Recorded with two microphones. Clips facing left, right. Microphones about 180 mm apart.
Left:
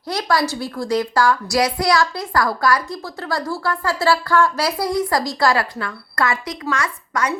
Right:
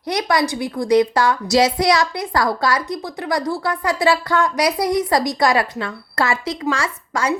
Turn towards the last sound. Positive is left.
turn(degrees=-30)  # may be behind; listen again after turning